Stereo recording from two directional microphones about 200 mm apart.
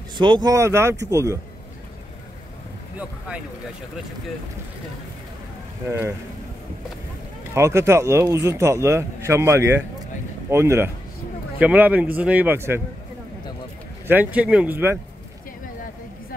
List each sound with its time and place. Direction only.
0.2 s a man's voice: 20° right (ahead or behind)
3.0 s a man's voice: 5° right (ahead or behind)
5.9 s a man's voice: 15° right (ahead or behind)
7.5 s a man's voice: 15° right (ahead or behind)
14.0 s a man's voice: 10° right (ahead or behind)